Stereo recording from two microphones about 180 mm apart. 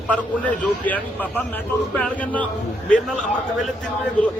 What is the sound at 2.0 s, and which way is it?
Speech, 10° left (ahead or behind).